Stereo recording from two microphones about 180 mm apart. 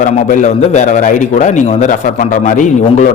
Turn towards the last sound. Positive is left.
turn(degrees=45)  # may be behind; listen again after turning